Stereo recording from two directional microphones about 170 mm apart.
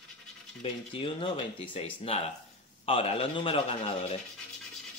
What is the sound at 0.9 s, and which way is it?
Speech, 30° left (ahead or behind).